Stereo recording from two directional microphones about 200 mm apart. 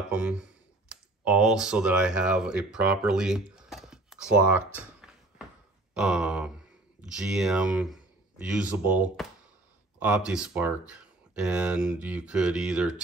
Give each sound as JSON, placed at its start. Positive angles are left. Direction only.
{"t": 0.1, "sound": "speech", "side_deg": -5}
{"t": 5.9, "sound": "speech", "side_deg": -5}